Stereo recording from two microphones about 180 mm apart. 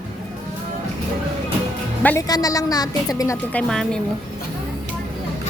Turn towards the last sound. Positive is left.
turn(degrees=5)  # may be behind; listen again after turning